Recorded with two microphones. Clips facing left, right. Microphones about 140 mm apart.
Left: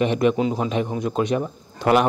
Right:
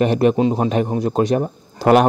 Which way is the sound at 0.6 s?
45° right (ahead or behind).